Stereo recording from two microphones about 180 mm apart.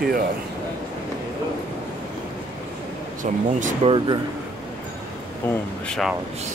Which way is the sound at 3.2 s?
45° right (ahead or behind).